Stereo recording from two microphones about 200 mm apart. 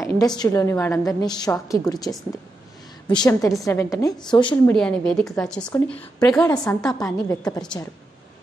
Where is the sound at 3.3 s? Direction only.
15° left (ahead or behind).